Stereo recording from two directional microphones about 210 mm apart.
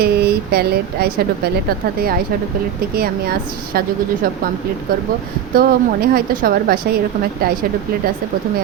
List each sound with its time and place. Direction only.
0.0 s speech: 50° right (ahead or behind)
5.5 s speech: 45° right (ahead or behind)